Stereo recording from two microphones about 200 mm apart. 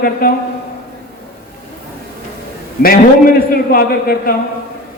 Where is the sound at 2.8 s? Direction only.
45° left (ahead or behind).